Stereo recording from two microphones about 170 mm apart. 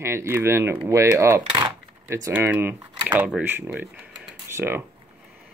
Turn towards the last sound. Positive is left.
turn(degrees=-15)  # may be behind; listen again after turning